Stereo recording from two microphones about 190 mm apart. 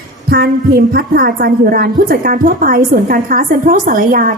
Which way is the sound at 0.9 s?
45° right (ahead or behind).